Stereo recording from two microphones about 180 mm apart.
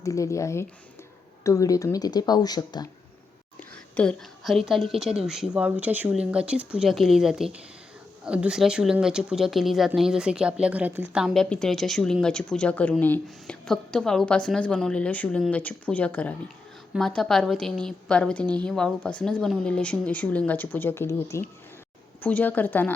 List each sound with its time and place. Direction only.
0.0 s a woman's voice: 15° left (ahead or behind)
3.6 s speech: 5° left (ahead or behind)